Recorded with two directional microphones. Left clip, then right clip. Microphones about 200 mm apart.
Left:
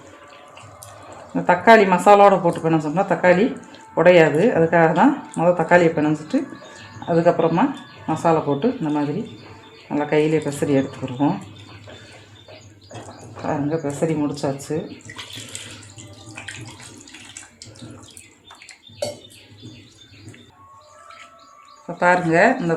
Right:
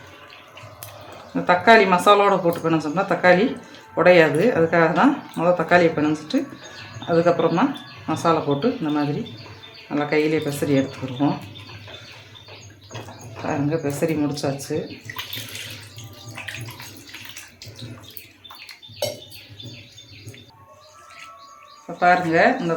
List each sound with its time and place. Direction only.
1.3 s speech: 25° left (ahead or behind)
13.7 s speech: 15° left (ahead or behind)
21.9 s speech: 40° left (ahead or behind)